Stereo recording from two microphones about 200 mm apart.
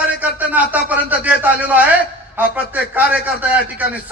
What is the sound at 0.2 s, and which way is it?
A man's voice, 10° right (ahead or behind).